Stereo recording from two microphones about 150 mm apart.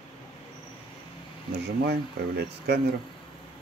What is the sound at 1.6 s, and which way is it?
Speech, 90° right.